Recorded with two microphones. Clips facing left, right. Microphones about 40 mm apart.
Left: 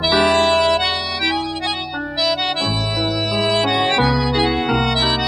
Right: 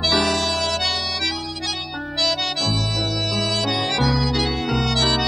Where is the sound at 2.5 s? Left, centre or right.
Left.